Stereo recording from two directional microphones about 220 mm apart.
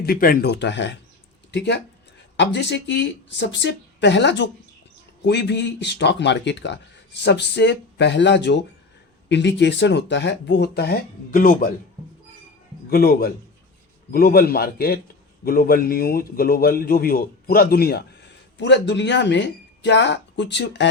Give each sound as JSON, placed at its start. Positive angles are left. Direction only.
{"t": 0.0, "sound": "a man's voice", "side_deg": 40}
{"t": 12.9, "sound": "a man's voice", "side_deg": 45}